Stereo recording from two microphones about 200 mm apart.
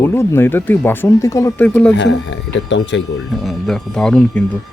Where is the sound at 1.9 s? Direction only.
65° left (ahead or behind).